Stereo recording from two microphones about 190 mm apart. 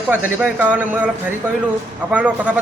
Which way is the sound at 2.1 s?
5° right (ahead or behind).